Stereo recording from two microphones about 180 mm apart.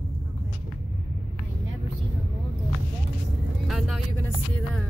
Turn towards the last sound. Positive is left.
turn(degrees=0)  # may be behind; listen again after turning